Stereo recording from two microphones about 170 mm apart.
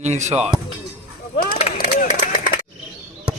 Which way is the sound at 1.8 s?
50° left (ahead or behind).